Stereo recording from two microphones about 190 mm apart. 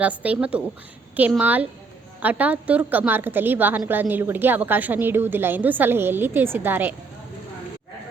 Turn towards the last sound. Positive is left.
turn(degrees=-10)  # may be behind; listen again after turning